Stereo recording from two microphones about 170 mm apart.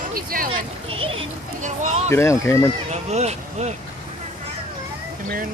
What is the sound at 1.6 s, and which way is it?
Speech, 45° right (ahead or behind).